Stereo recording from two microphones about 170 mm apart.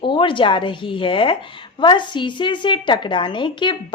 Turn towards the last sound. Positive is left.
turn(degrees=30)  # may be behind; listen again after turning